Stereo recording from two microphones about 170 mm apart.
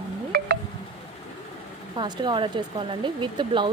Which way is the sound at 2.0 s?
25° right (ahead or behind).